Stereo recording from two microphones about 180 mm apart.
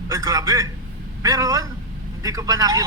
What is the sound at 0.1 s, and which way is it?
A man's voice, 20° right (ahead or behind).